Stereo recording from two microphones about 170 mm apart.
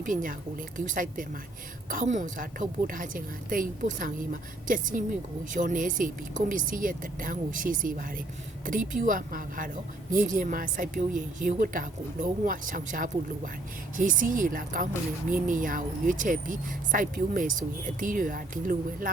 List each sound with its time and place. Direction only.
0.0 s speech: 50° right (ahead or behind)